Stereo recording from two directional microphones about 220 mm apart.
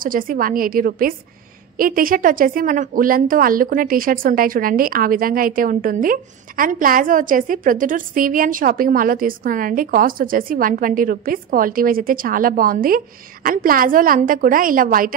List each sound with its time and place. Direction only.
0.0 s a woman's voice: 40° right (ahead or behind)